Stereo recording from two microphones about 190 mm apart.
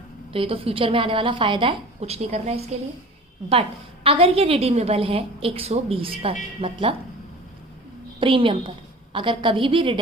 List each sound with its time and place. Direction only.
0.3 s a woman's voice: 30° right (ahead or behind)
4.0 s a woman's voice: 30° right (ahead or behind)
8.2 s a woman's voice: 25° right (ahead or behind)